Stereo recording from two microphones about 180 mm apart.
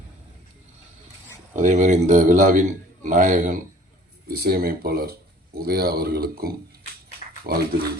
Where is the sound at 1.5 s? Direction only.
45° right (ahead or behind).